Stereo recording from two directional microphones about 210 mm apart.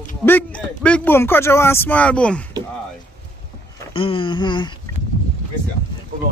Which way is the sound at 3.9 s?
25° left (ahead or behind).